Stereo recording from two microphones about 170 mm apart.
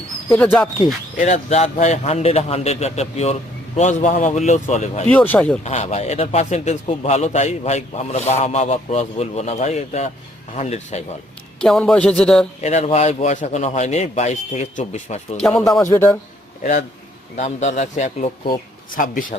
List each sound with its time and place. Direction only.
0.4 s speech: centre (ahead or behind)
1.1 s a man's voice: 45° left (ahead or behind)
5.0 s speech: 10° left (ahead or behind)
5.6 s a man's voice: 40° left (ahead or behind)
11.6 s speech: 5° left (ahead or behind)
12.6 s a man's voice: 40° left (ahead or behind)
15.4 s speech: centre (ahead or behind)
15.8 s speech: 15° left (ahead or behind)
17.3 s speech: 45° left (ahead or behind)